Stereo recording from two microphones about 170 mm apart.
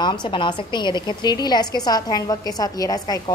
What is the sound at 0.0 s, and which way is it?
A woman's voice, 25° left (ahead or behind).